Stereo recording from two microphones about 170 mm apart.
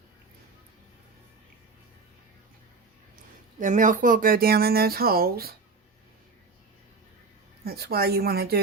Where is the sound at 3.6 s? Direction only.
50° right (ahead or behind).